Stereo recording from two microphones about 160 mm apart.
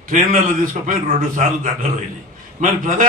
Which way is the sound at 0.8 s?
50° right (ahead or behind).